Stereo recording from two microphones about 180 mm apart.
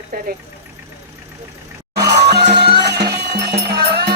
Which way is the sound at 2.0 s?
70° right (ahead or behind).